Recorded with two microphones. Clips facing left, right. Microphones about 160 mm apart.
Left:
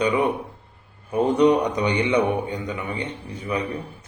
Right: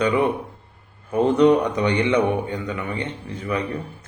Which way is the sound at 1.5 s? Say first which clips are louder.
Right 2 dB; 15° left (ahead or behind).